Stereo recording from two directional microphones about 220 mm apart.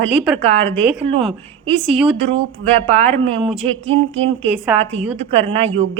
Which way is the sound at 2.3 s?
25° right (ahead or behind).